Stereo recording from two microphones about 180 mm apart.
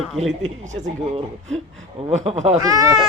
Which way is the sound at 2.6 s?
20° right (ahead or behind).